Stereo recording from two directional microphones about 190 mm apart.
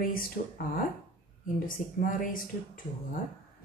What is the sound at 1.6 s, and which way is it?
Speech, 45° left (ahead or behind).